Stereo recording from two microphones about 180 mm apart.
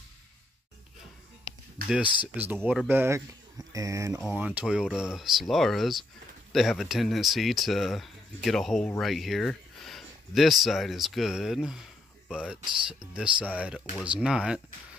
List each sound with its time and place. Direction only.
1.8 s speech: 55° right (ahead or behind)
2.1 s speech: 10° right (ahead or behind)